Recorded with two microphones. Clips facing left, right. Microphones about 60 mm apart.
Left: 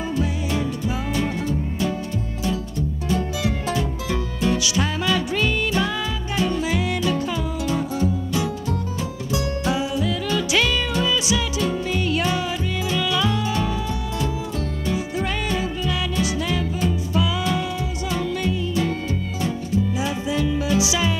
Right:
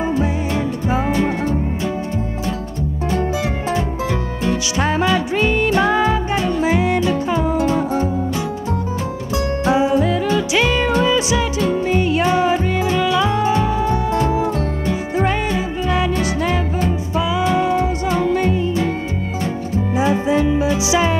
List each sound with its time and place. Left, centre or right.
0.1 s music: right
4.5 s music: right
9.7 s music: right
15.9 s music: right
17.2 s music: right
20.0 s music: right